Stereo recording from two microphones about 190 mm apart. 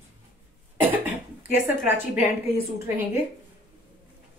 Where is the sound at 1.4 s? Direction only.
10° right (ahead or behind).